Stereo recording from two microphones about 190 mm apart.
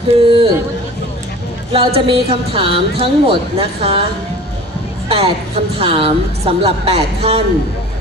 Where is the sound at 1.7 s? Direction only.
30° right (ahead or behind).